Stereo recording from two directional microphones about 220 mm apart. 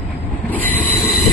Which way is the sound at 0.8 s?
Centre (ahead or behind).